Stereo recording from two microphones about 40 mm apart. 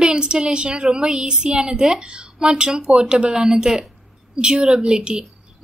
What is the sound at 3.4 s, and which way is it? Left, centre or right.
Speech, centre.